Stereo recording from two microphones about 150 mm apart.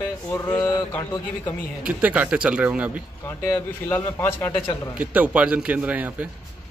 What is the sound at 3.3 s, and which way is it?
A man's voice, 15° left (ahead or behind).